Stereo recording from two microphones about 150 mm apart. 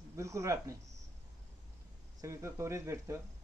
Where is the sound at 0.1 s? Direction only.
20° right (ahead or behind).